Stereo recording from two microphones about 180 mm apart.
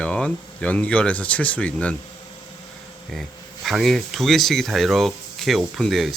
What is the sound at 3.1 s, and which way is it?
Speech, centre (ahead or behind).